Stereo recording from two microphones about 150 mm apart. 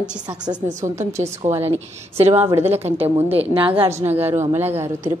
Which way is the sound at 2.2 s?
45° right (ahead or behind).